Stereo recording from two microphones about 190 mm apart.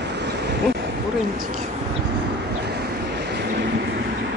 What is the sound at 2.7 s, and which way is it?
Vehicle, 60° right (ahead or behind).